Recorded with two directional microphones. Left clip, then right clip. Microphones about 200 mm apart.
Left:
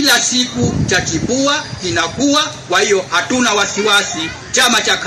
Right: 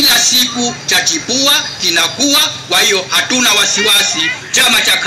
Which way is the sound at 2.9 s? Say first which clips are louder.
Right 2 dB; 25° left (ahead or behind).